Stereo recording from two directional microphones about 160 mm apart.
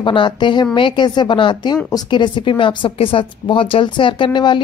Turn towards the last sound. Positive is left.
turn(degrees=30)  # may be behind; listen again after turning